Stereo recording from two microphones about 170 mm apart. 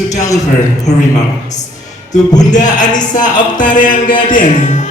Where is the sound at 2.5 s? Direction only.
45° left (ahead or behind).